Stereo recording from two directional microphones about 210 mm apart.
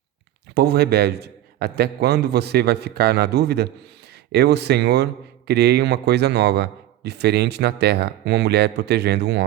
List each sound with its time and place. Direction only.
0.5 s a man's voice: 50° right (ahead or behind)